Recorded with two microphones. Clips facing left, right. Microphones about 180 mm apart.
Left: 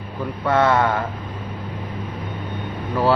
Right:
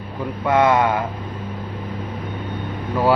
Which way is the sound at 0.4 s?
15° right (ahead or behind).